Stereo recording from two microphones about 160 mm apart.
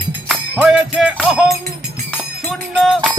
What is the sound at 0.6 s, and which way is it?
Music, 5° right (ahead or behind).